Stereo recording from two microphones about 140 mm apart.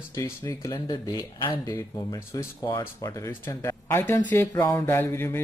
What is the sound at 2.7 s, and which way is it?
Speech, 35° left (ahead or behind).